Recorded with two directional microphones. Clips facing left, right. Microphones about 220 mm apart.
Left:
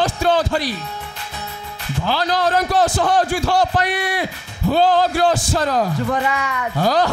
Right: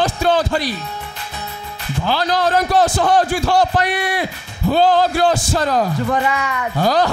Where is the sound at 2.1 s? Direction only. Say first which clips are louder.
Right 1 dB; 15° right (ahead or behind).